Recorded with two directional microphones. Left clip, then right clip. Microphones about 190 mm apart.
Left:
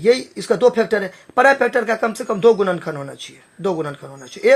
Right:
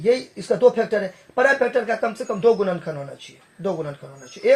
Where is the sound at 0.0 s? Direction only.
55° left (ahead or behind).